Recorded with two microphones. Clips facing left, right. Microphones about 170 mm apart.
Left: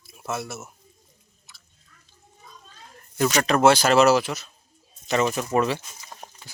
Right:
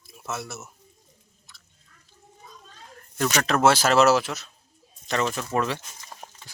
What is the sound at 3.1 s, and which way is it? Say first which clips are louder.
Speech: left 3 dB; 5° left (ahead or behind).